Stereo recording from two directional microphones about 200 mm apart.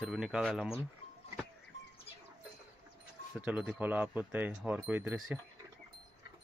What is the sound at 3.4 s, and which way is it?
Speech, 5° right (ahead or behind).